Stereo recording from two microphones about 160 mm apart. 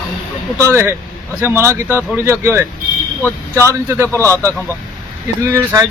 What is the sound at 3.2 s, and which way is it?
Speech, 15° left (ahead or behind).